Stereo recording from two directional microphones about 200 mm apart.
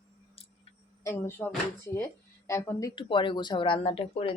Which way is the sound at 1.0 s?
10° left (ahead or behind).